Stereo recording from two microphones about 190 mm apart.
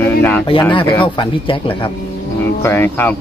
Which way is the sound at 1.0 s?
25° left (ahead or behind).